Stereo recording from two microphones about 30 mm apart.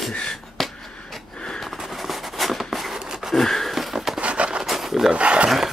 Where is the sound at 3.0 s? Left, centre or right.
Right.